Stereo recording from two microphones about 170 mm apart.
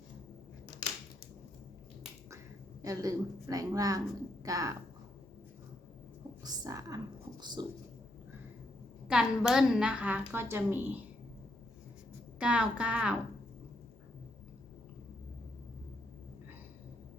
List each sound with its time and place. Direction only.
2.8 s a woman's voice: 20° right (ahead or behind)
6.4 s a woman's voice: 20° right (ahead or behind)
9.0 s a woman's voice: 5° right (ahead or behind)
12.4 s a woman's voice: 5° right (ahead or behind)